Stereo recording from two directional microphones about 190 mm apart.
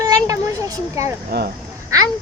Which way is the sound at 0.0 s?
20° right (ahead or behind).